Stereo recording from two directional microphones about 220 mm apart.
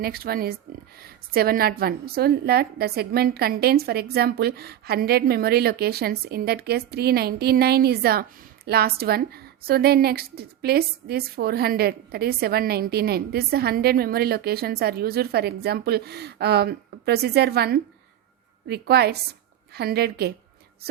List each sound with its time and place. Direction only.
0.0 s a woman's voice: 45° right (ahead or behind)